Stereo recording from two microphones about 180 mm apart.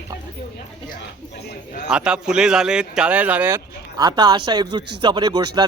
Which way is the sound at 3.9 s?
25° right (ahead or behind).